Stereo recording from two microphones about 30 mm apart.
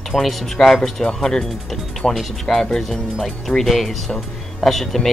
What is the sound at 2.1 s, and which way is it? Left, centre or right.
Speech, centre.